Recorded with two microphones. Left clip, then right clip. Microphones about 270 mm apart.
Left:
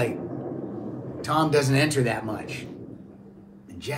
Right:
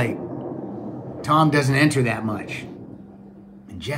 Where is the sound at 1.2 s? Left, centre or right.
Right.